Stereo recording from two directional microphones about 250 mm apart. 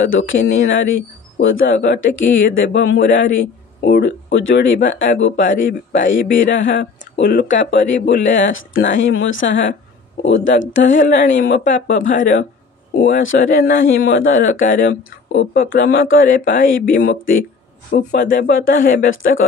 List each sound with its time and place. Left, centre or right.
0.0 s speech: left
10.9 s speech: left
13.0 s speech: left